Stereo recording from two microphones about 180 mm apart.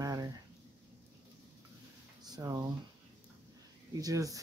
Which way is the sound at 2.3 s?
20° right (ahead or behind).